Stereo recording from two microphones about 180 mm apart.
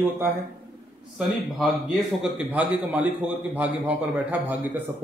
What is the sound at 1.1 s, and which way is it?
A man's voice, 5° right (ahead or behind).